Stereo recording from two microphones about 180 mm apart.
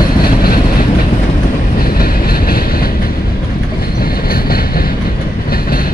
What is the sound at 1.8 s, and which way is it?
Train, 55° left (ahead or behind).